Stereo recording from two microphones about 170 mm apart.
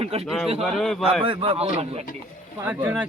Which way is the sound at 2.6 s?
10° right (ahead or behind).